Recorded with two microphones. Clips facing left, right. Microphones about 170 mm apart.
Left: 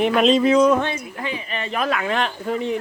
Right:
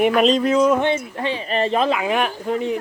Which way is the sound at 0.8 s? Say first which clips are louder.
Right 6 dB; 25° right (ahead or behind).